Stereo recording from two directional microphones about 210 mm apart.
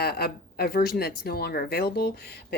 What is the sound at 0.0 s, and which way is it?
Speech, 50° left (ahead or behind).